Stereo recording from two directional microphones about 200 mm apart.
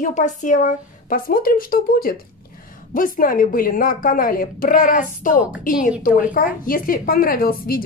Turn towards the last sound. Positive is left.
turn(degrees=45)  # may be behind; listen again after turning